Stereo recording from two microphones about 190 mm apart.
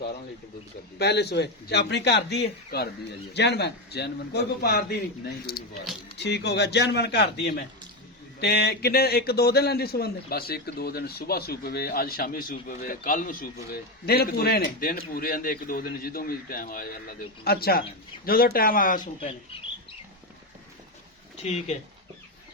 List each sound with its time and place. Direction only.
0.9 s a man's voice: 60° left (ahead or behind); by 19.3 s 45° left (ahead or behind)